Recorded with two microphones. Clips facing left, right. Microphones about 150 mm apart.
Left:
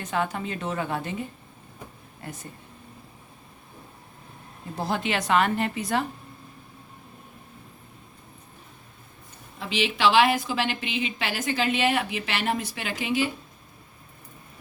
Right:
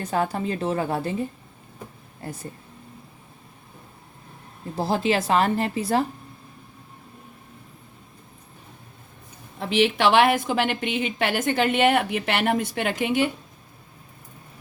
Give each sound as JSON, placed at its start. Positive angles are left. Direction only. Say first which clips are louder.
{"t": 0.0, "sound": "a woman's voice", "louder": "right 3 dB", "side_deg": -35}
{"t": 4.8, "sound": "a woman's voice", "louder": "right 5 dB", "side_deg": -30}
{"t": 9.6, "sound": "a woman's voice", "louder": "right 5 dB", "side_deg": -55}